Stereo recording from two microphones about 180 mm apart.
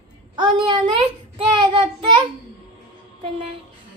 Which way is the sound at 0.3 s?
25° right (ahead or behind).